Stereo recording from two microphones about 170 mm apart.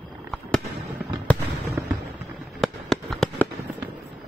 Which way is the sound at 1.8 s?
15° right (ahead or behind).